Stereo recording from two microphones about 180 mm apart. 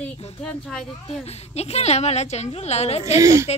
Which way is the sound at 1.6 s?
35° left (ahead or behind).